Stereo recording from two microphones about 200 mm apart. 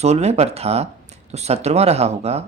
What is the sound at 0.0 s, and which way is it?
Speech, 30° right (ahead or behind).